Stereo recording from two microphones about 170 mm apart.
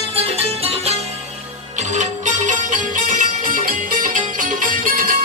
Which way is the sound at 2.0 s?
45° right (ahead or behind).